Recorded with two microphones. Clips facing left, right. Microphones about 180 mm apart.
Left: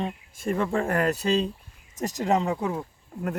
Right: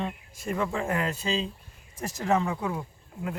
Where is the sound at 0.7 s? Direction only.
60° left (ahead or behind).